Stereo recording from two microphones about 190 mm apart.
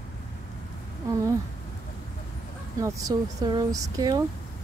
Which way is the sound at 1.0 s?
15° right (ahead or behind).